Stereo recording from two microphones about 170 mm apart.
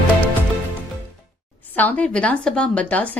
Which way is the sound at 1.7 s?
10° left (ahead or behind).